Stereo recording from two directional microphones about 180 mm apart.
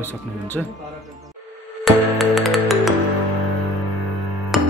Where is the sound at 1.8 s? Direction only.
Centre (ahead or behind).